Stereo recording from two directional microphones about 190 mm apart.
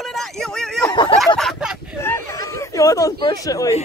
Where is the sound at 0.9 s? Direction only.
25° left (ahead or behind).